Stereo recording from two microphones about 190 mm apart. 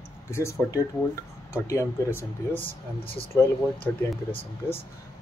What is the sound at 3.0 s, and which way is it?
Speech, 30° left (ahead or behind).